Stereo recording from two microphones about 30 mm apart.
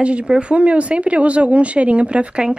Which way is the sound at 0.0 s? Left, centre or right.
Right.